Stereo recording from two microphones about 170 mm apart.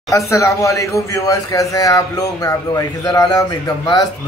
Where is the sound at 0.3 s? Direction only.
20° left (ahead or behind).